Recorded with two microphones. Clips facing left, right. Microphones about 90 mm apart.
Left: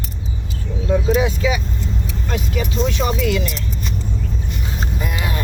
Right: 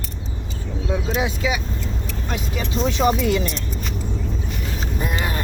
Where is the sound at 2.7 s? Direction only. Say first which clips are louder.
Right 3 dB; 20° right (ahead or behind).